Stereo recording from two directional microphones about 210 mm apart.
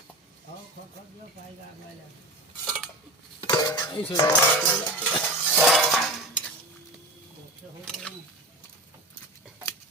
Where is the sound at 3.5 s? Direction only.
15° left (ahead or behind).